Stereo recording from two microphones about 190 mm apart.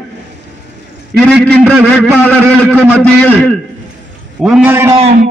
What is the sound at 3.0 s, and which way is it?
A man's voice, 5° left (ahead or behind).